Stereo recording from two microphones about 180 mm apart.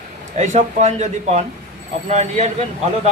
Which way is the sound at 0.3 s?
40° right (ahead or behind).